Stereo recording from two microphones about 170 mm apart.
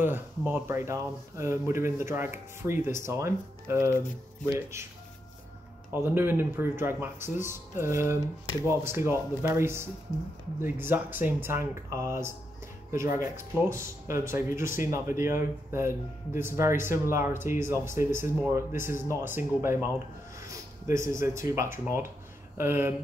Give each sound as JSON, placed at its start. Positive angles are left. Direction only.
{"t": 0.0, "sound": "speech", "side_deg": -10}
{"t": 6.0, "sound": "speech", "side_deg": -10}